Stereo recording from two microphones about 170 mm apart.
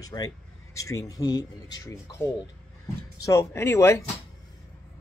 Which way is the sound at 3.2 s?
15° left (ahead or behind).